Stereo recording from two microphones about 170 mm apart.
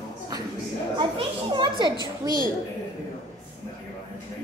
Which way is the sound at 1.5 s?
25° right (ahead or behind).